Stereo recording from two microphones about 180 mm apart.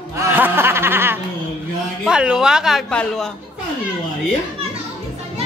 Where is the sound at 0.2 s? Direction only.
15° right (ahead or behind).